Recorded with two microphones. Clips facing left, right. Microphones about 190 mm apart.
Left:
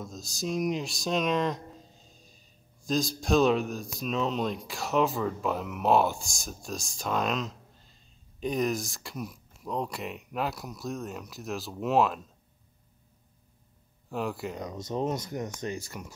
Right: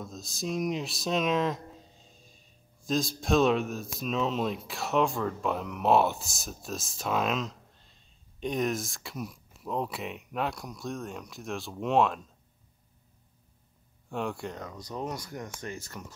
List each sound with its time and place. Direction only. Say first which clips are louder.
0.0 s speech: left 1 dB; centre (ahead or behind)
14.0 s speech: left 1 dB; centre (ahead or behind)
14.6 s speech: left 5 dB; 20° left (ahead or behind)